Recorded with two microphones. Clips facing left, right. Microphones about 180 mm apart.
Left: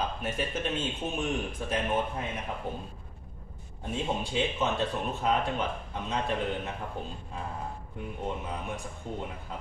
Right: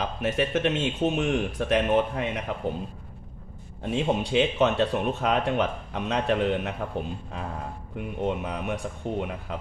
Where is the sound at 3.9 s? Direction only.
75° right (ahead or behind).